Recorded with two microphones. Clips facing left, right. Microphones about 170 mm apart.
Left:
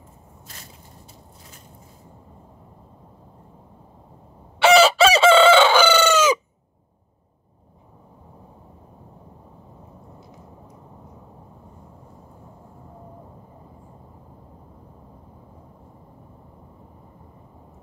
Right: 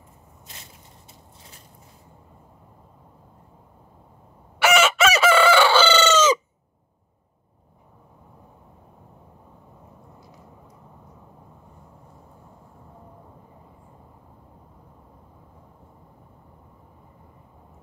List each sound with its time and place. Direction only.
4.6 s chicken: 30° left (ahead or behind); by 6.3 s 10° left (ahead or behind)